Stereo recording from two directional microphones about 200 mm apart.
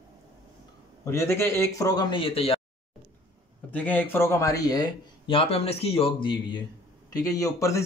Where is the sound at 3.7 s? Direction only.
10° left (ahead or behind); by 6.3 s 30° left (ahead or behind).